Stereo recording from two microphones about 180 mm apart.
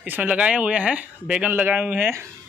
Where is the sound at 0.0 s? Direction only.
10° right (ahead or behind).